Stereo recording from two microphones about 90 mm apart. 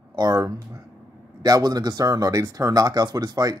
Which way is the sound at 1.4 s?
45° right (ahead or behind).